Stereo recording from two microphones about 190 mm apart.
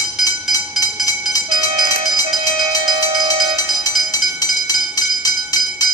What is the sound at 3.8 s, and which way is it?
Music, 20° left (ahead or behind).